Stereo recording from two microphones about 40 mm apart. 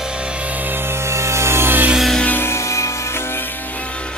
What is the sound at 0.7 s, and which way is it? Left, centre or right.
Music, right.